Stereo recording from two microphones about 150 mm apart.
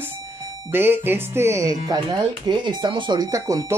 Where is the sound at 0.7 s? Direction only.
15° right (ahead or behind).